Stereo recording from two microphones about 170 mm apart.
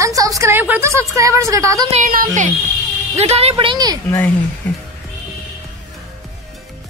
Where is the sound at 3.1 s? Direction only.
40° right (ahead or behind).